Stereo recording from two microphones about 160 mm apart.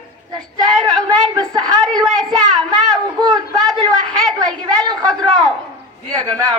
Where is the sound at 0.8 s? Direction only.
5° left (ahead or behind).